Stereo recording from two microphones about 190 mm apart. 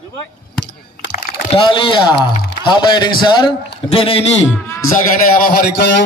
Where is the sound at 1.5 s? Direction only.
25° left (ahead or behind).